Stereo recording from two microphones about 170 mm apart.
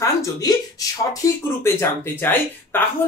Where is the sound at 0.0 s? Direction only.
20° left (ahead or behind).